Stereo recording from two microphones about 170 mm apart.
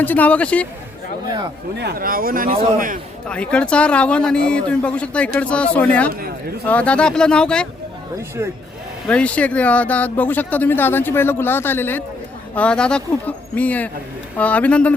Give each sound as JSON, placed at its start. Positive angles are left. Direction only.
{"t": 0.0, "sound": "speech", "side_deg": 10}
{"t": 1.8, "sound": "a man's voice", "side_deg": -65}
{"t": 3.2, "sound": "speech", "side_deg": 5}
{"t": 8.4, "sound": "speech", "side_deg": -15}
{"t": 9.0, "sound": "speech", "side_deg": 5}